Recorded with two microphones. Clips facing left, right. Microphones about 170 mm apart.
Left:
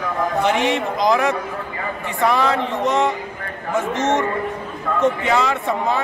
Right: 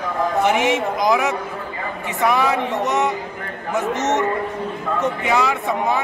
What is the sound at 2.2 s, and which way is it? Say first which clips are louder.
Speech: even; 15° right (ahead or behind).